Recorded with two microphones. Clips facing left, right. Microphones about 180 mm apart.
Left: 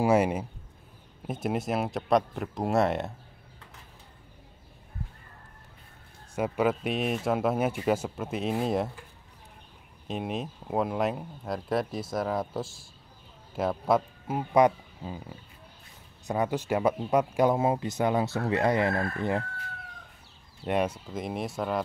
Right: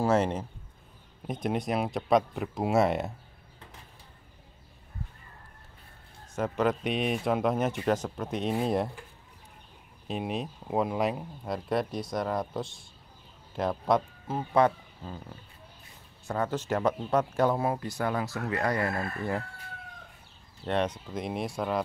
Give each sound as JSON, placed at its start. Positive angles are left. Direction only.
{"t": 0.0, "sound": "speech", "side_deg": 10}
{"t": 6.3, "sound": "speech", "side_deg": 10}
{"t": 10.0, "sound": "speech", "side_deg": 0}
{"t": 20.6, "sound": "speech", "side_deg": 10}